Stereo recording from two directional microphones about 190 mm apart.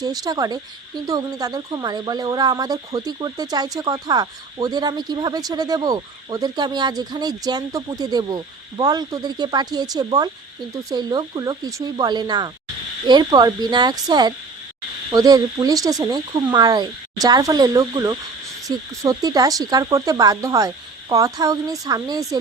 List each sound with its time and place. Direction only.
0.0 s speech: 20° right (ahead or behind)